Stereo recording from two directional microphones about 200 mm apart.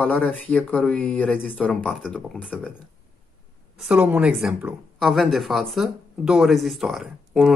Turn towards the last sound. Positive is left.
turn(degrees=0)  # may be behind; listen again after turning